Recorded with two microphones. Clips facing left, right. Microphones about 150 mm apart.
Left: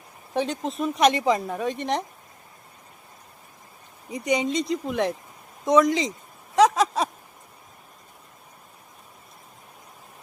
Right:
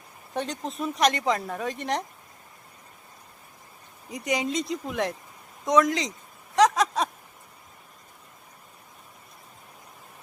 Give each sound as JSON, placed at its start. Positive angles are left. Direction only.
{"t": 0.3, "sound": "speech", "side_deg": 0}
{"t": 4.1, "sound": "speech", "side_deg": 0}
{"t": 6.6, "sound": "a sound", "side_deg": 5}